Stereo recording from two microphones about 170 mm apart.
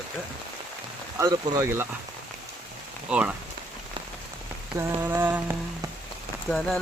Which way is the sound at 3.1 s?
5° right (ahead or behind).